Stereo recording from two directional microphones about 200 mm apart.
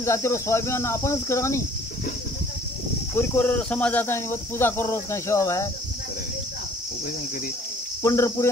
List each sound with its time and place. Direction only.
0.0 s speech: 15° left (ahead or behind)
3.2 s speech: 10° left (ahead or behind)
8.0 s speech: 15° left (ahead or behind)